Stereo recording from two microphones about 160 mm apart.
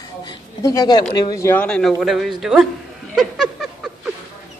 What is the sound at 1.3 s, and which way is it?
Speech, 15° left (ahead or behind).